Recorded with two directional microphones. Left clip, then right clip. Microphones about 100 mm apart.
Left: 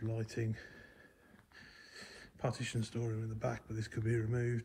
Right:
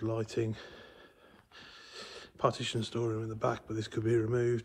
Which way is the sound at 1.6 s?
15° right (ahead or behind).